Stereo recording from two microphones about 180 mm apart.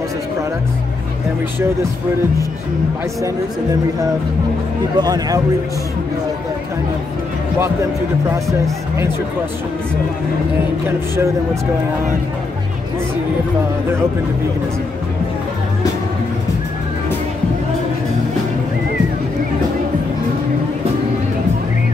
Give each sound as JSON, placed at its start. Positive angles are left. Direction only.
{"t": 4.9, "sound": "speech", "side_deg": -20}
{"t": 8.5, "sound": "speech", "side_deg": -15}